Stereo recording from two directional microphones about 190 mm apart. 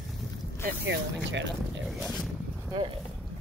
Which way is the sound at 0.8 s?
70° right (ahead or behind).